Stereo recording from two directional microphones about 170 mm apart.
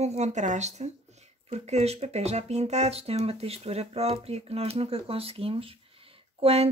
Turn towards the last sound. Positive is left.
turn(degrees=-35)  # may be behind; listen again after turning